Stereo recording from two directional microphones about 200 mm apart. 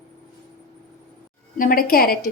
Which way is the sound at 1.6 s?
45° left (ahead or behind).